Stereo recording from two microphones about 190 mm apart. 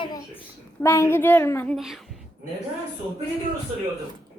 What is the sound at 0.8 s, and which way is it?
Speech, 15° left (ahead or behind).